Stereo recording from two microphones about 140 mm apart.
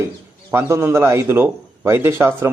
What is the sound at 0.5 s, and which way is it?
A man's voice, 20° right (ahead or behind).